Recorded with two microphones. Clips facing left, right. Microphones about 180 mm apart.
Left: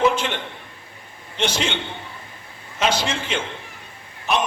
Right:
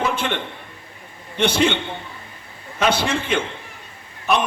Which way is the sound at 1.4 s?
55° right (ahead or behind).